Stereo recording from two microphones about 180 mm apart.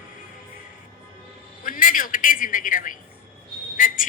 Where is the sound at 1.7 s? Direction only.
50° left (ahead or behind).